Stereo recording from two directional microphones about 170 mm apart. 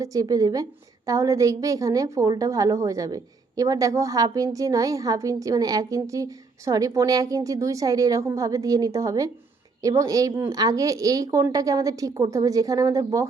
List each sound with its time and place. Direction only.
0.0 s a woman's voice: 20° right (ahead or behind)